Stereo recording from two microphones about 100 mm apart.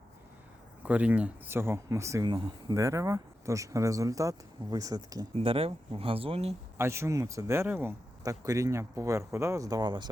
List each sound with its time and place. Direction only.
0.9 s speech: 15° right (ahead or behind); by 2.2 s 30° right (ahead or behind)
2.2 s speech: 50° right (ahead or behind)
2.7 s speech: 30° right (ahead or behind)
5.4 s speech: 70° right (ahead or behind)
6.7 s speech: 25° right (ahead or behind)
8.2 s speech: 35° right (ahead or behind)